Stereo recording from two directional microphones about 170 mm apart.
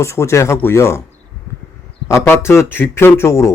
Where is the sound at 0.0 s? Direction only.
15° left (ahead or behind).